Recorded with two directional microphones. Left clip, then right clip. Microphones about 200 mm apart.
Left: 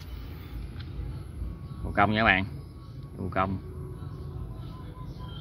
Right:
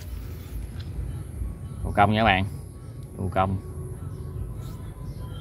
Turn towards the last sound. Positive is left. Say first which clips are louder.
# right 4 dB
turn(degrees=0)  # may be behind; listen again after turning